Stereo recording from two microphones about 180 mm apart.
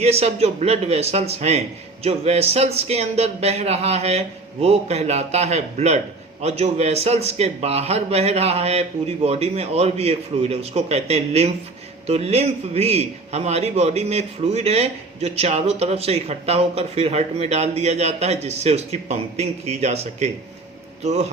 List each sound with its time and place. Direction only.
0.0 s a man's voice: 35° right (ahead or behind)